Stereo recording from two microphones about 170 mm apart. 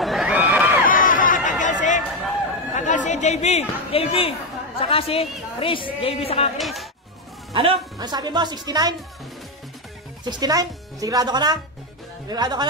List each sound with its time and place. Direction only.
0.0 s a sound: centre (ahead or behind)
0.8 s a sound: 50° left (ahead or behind)
1.6 s chatter: 45° left (ahead or behind)
2.0 s run: centre (ahead or behind)
2.7 s chatter: 45° left (ahead or behind)
4.7 s a man's voice: 35° left (ahead or behind)
6.6 s speech: centre (ahead or behind)
7.5 s a woman's voice: 30° right (ahead or behind)
10.2 s a woman's voice: 25° right (ahead or behind)